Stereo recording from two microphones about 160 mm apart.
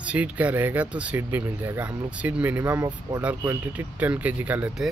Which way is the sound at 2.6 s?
20° right (ahead or behind).